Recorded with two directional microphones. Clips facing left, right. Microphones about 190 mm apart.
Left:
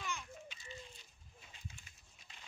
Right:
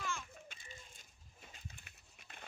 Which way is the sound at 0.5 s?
50° right (ahead or behind).